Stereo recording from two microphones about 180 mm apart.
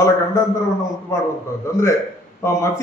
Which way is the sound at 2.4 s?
15° left (ahead or behind).